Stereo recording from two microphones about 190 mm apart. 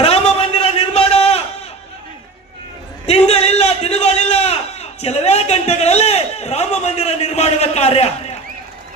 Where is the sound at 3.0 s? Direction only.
35° left (ahead or behind).